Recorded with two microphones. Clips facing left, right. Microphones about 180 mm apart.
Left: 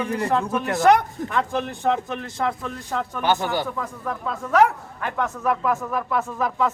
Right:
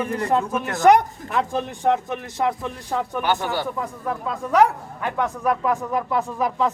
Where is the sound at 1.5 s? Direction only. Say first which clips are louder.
Right 1 dB; 15° right (ahead or behind).